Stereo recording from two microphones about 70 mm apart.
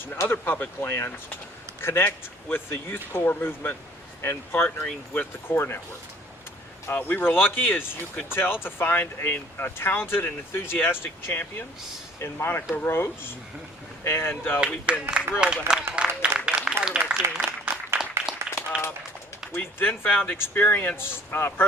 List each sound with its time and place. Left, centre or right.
0.2 s speech: left
6.8 s speech: left
14.6 s speech: centre
15.6 s a sound: centre
18.7 s run: centre
19.5 s speech: left